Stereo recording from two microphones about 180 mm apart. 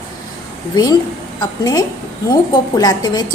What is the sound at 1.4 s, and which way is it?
A woman's voice, 20° left (ahead or behind).